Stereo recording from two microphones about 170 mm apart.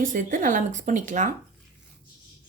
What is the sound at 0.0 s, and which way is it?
Speech, 50° right (ahead or behind).